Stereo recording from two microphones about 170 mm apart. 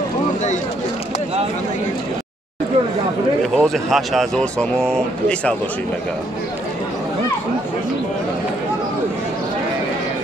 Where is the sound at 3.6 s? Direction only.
Centre (ahead or behind).